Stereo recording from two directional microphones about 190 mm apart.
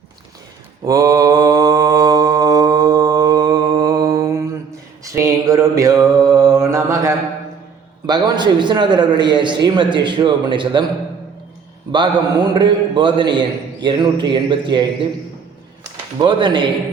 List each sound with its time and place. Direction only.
0.9 s mantra: 20° right (ahead or behind)
8.0 s a man's voice: 20° right (ahead or behind)
11.9 s a man's voice: 25° right (ahead or behind)